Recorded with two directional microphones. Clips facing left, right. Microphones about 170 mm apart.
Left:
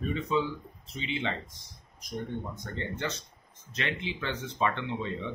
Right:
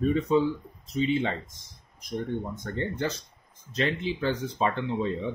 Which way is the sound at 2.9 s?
35° right (ahead or behind).